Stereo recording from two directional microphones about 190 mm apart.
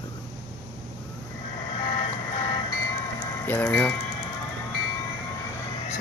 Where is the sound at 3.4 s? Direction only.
10° left (ahead or behind).